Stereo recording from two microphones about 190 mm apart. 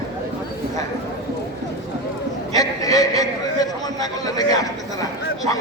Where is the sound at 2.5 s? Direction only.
20° left (ahead or behind).